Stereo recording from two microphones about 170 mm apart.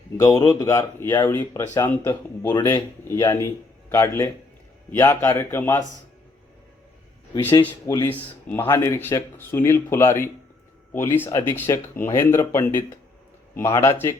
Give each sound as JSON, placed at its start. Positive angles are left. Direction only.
{"t": 0.2, "sound": "a man's voice", "side_deg": 15}
{"t": 7.9, "sound": "speech", "side_deg": 20}
{"t": 8.1, "sound": "speech", "side_deg": 10}